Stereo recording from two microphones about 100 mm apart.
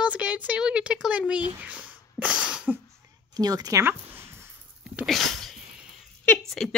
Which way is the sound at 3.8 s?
20° right (ahead or behind).